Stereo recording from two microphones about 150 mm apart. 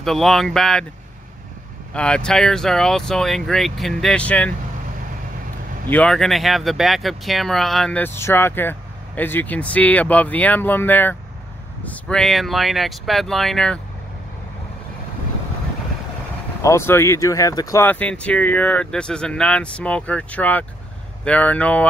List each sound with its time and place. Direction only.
0.0 s speech: centre (ahead or behind)
2.0 s speech: 5° left (ahead or behind)
5.9 s speech: 5° left (ahead or behind)
16.6 s speech: 15° left (ahead or behind)
17.8 s speech: 10° left (ahead or behind)